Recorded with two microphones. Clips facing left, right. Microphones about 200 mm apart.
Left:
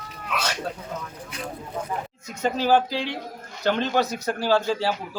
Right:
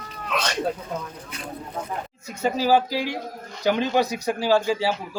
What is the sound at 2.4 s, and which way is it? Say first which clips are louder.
Speech: right 1 dB; 10° right (ahead or behind).